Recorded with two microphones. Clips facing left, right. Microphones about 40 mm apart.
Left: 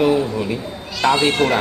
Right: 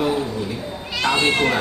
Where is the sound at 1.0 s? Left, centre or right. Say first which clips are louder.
Left 3 dB; left.